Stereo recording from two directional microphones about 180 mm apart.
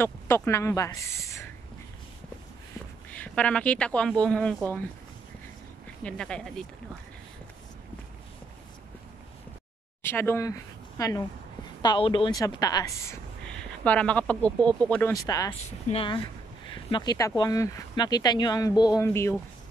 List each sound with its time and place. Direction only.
0.0 s speech: 15° left (ahead or behind)
3.1 s speech: 5° left (ahead or behind)
6.0 s speech: 5° left (ahead or behind)
10.0 s a woman's voice: 10° left (ahead or behind)
13.5 s speech: 5° left (ahead or behind)
15.9 s speech: 30° left (ahead or behind)